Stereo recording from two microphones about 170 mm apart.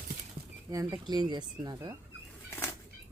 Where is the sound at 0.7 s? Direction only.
20° right (ahead or behind).